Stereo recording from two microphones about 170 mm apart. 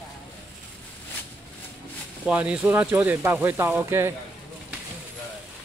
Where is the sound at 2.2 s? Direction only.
5° right (ahead or behind).